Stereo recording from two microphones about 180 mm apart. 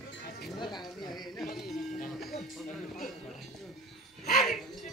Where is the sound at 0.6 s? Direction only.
25° left (ahead or behind).